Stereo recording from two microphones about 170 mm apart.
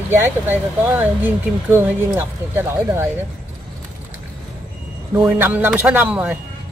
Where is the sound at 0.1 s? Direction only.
10° right (ahead or behind).